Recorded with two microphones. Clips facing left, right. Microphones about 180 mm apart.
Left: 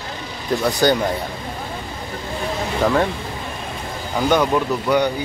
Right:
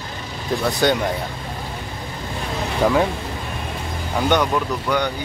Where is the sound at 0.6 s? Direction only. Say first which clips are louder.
Left 2 dB; centre (ahead or behind).